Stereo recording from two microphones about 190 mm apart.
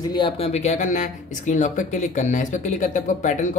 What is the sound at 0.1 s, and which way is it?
Speech, 25° left (ahead or behind).